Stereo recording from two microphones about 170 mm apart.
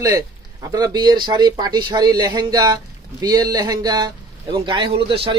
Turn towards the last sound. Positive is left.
turn(degrees=-30)  # may be behind; listen again after turning